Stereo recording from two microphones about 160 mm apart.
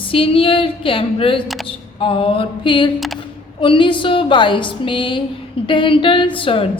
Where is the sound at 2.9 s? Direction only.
Centre (ahead or behind).